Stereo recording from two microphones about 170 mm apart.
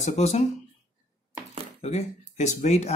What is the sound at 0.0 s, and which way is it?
Speech, 40° left (ahead or behind).